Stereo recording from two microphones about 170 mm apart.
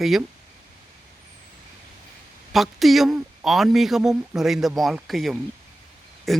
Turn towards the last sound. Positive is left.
turn(degrees=0)  # may be behind; listen again after turning